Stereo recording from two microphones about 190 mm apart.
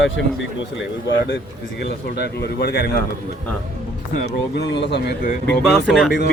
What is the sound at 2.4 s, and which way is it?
Speech, 55° left (ahead or behind).